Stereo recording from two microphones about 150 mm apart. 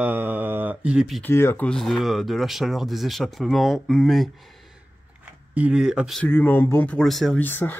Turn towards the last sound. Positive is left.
turn(degrees=10)  # may be behind; listen again after turning